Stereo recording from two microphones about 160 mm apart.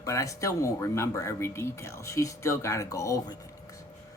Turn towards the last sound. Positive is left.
turn(degrees=20)  # may be behind; listen again after turning